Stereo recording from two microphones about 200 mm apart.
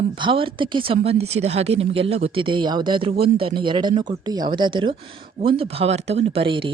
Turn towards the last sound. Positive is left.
turn(degrees=-25)  # may be behind; listen again after turning